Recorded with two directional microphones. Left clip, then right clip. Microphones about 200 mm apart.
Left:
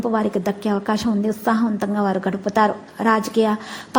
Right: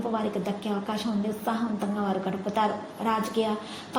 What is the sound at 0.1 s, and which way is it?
A woman's voice, 45° left (ahead or behind).